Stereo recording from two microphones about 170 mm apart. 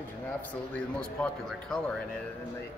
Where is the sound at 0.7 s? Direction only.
5° left (ahead or behind).